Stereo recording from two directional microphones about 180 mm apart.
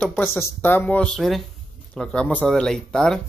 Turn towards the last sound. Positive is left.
turn(degrees=5)  # may be behind; listen again after turning